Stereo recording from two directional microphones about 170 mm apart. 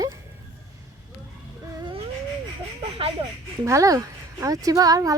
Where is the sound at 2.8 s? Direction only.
35° right (ahead or behind).